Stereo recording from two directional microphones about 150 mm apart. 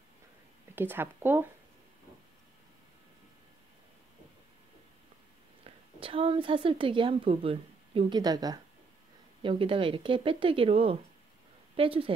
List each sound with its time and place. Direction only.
0.7 s speech: 15° right (ahead or behind)
5.6 s a woman's voice: 35° right (ahead or behind)